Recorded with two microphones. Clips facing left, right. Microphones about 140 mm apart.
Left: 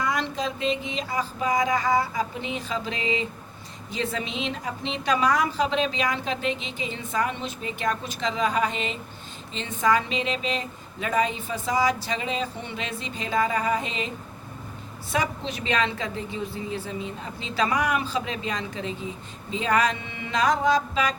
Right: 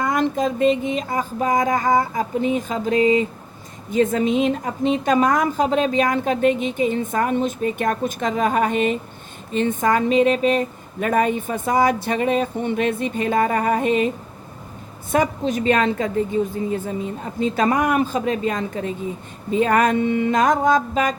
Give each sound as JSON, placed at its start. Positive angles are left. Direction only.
{"t": 0.0, "sound": "a woman's voice", "side_deg": -50}
{"t": 15.1, "sound": "a woman's voice", "side_deg": -50}